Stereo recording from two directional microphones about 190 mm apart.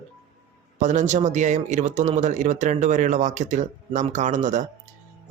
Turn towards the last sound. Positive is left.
turn(degrees=-40)  # may be behind; listen again after turning